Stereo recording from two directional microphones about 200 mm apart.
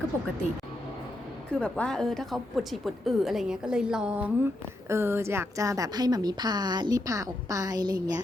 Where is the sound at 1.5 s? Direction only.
5° left (ahead or behind).